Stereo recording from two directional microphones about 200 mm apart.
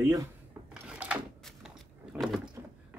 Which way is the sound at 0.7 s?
5° right (ahead or behind).